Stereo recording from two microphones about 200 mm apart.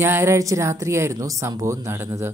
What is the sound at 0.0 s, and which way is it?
Speech, 10° right (ahead or behind).